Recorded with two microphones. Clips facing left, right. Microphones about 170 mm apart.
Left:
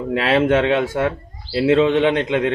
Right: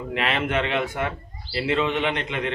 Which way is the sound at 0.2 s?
90° left.